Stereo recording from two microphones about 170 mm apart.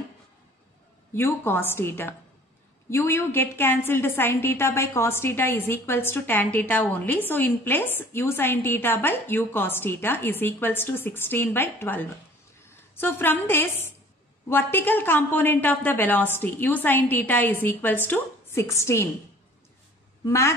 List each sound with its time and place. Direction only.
1.1 s a woman's voice: 15° left (ahead or behind)
20.2 s a woman's voice: 15° left (ahead or behind)